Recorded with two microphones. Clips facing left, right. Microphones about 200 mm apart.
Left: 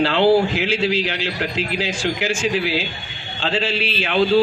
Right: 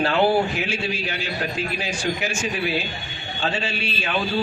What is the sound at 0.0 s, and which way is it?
Speech, 90° left.